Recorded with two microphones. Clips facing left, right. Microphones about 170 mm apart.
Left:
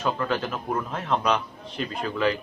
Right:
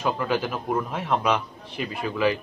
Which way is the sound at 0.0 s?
10° right (ahead or behind).